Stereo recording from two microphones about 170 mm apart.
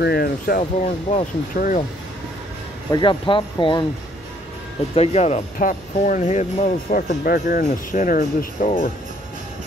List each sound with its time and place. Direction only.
0.0 s speech: 65° left (ahead or behind)
0.6 s speech: 40° left (ahead or behind)
2.9 s speech: 25° left (ahead or behind)
4.9 s speech: 35° left (ahead or behind)